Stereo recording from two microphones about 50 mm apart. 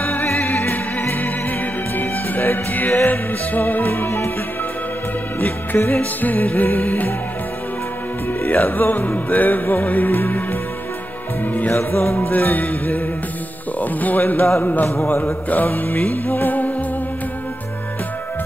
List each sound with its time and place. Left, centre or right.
0.0 s music: left
5.4 s music: left
8.3 s music: left
11.7 s music: left
13.7 s speech: left
14.6 s music: left